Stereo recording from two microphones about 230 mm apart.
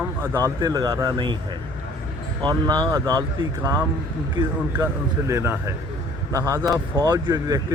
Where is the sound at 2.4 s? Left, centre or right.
Centre.